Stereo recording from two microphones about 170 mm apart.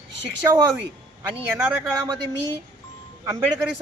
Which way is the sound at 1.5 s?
15° right (ahead or behind).